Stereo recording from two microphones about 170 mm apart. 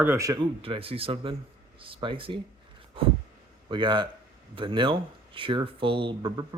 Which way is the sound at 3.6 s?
30° right (ahead or behind).